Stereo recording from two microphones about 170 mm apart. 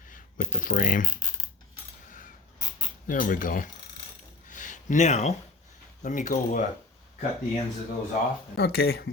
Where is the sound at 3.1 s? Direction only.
55° left (ahead or behind).